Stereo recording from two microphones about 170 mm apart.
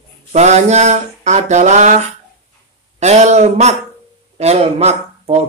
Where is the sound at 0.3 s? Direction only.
40° right (ahead or behind).